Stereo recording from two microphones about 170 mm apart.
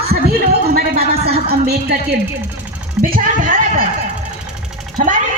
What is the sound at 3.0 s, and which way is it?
Speech, 55° right (ahead or behind).